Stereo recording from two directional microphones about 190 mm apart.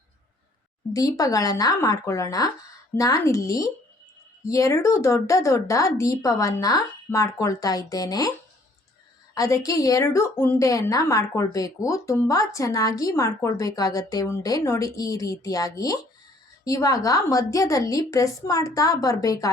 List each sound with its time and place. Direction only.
0.9 s a woman's voice: 15° left (ahead or behind)
9.3 s a woman's voice: 15° left (ahead or behind)